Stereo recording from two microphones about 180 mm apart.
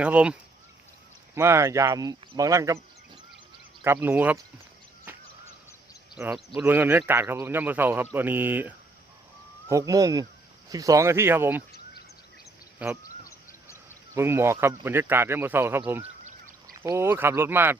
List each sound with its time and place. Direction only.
0.0 s speech: 5° right (ahead or behind)
1.4 s speech: 15° right (ahead or behind)
3.8 s speech: 10° right (ahead or behind)
5.1 s goose: 10° right (ahead or behind)
6.1 s speech: 5° right (ahead or behind)
13.0 s a sound: 15° left (ahead or behind)
14.2 s speech: 15° right (ahead or behind)
16.0 s a sound: 45° right (ahead or behind)
16.8 s speech: 15° right (ahead or behind)